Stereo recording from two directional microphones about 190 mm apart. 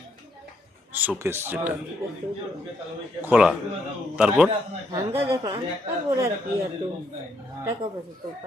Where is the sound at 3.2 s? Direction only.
5° right (ahead or behind).